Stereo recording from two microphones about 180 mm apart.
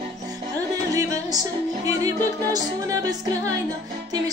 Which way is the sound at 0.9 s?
20° right (ahead or behind).